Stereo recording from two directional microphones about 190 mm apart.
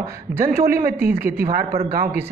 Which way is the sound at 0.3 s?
10° right (ahead or behind).